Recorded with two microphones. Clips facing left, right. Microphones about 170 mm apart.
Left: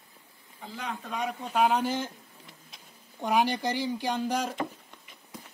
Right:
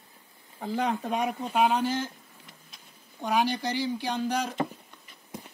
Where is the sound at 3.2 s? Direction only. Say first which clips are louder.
Left 1 dB; 10° left (ahead or behind).